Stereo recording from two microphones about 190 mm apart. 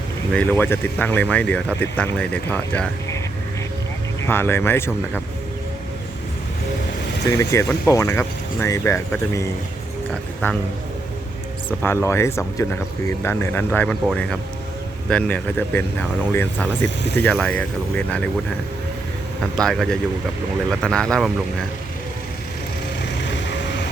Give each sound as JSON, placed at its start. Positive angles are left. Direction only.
{"t": 0.3, "sound": "speech", "side_deg": 10}
{"t": 4.2, "sound": "speech", "side_deg": 10}
{"t": 7.3, "sound": "speech", "side_deg": 15}
{"t": 11.8, "sound": "speech", "side_deg": 10}
{"t": 16.8, "sound": "speech", "side_deg": 65}
{"t": 17.3, "sound": "speech", "side_deg": 5}
{"t": 19.6, "sound": "speech", "side_deg": 5}
{"t": 23.2, "sound": "vehicle", "side_deg": 65}